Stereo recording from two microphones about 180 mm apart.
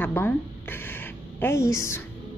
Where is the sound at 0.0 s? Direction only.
10° left (ahead or behind).